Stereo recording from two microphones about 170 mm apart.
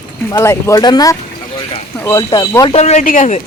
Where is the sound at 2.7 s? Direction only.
40° left (ahead or behind).